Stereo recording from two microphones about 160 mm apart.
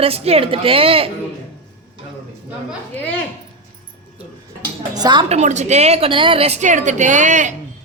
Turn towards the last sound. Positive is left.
turn(degrees=-50)  # may be behind; listen again after turning